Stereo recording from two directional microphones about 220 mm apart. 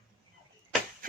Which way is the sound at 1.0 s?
40° right (ahead or behind).